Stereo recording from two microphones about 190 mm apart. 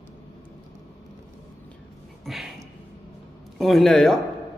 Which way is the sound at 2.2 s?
Centre (ahead or behind).